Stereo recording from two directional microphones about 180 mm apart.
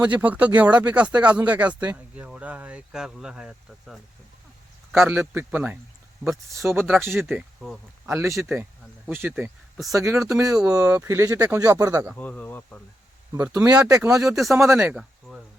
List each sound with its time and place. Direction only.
0.0 s speech: 10° right (ahead or behind)
12.1 s speech: 10° left (ahead or behind)
13.3 s speech: 15° right (ahead or behind)
14.2 s speech: centre (ahead or behind)